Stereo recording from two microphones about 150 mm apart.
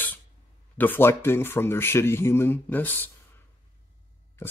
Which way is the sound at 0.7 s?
15° left (ahead or behind).